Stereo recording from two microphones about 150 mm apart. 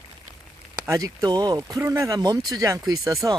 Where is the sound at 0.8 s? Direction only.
20° right (ahead or behind).